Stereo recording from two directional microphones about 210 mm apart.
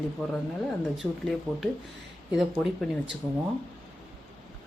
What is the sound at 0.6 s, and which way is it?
Speech, centre (ahead or behind).